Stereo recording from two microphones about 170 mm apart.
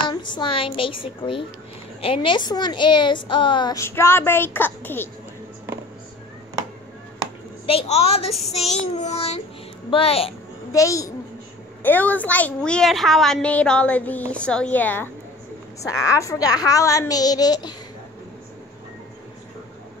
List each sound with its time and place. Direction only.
0.1 s a woman's voice: 25° left (ahead or behind); by 5.1 s 10° left (ahead or behind)
7.6 s a woman's voice: 35° left (ahead or behind)
10.7 s a woman's voice: 20° left (ahead or behind)